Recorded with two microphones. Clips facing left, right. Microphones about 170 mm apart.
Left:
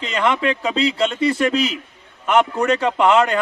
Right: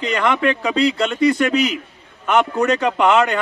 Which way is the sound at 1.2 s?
30° left (ahead or behind).